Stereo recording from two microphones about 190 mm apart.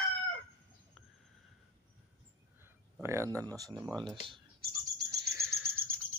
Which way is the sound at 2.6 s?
10° right (ahead or behind).